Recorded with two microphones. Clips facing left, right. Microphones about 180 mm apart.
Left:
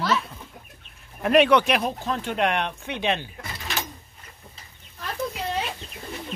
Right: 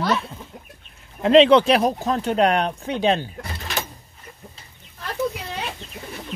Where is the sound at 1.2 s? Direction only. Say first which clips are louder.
Right 5 dB; 25° right (ahead or behind).